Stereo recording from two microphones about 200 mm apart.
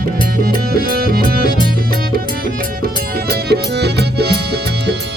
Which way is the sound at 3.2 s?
55° right (ahead or behind).